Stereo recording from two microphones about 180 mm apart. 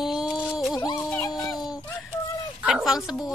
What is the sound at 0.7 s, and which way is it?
Music, 15° left (ahead or behind).